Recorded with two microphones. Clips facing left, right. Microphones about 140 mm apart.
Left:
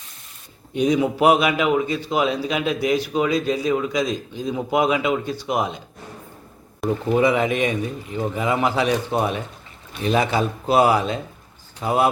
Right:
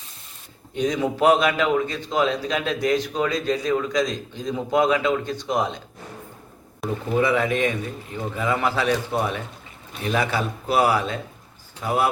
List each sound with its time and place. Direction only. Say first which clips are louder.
0.7 s a man's voice: left 4 dB; 15° left (ahead or behind)
6.8 s speech: left 5 dB; centre (ahead or behind)
7.2 s a man's voice: even; 20° left (ahead or behind)